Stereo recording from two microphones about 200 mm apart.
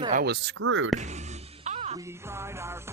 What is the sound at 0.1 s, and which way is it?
Speech, 55° right (ahead or behind).